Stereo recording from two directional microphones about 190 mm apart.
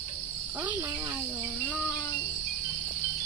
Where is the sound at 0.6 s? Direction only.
10° right (ahead or behind).